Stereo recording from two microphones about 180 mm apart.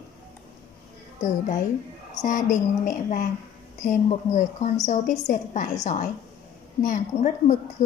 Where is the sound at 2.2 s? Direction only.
45° left (ahead or behind).